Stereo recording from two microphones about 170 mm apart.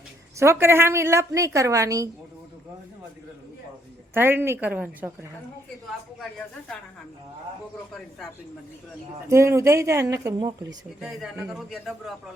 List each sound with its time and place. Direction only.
0.3 s a woman's voice: 15° right (ahead or behind)
4.1 s a woman's voice: 15° right (ahead or behind)
9.3 s a woman's voice: 15° right (ahead or behind)
11.0 s a man's voice: centre (ahead or behind)